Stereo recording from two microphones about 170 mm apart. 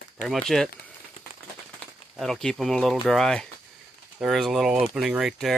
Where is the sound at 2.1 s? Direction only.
Centre (ahead or behind).